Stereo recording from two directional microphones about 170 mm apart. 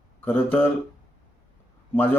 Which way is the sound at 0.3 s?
10° left (ahead or behind).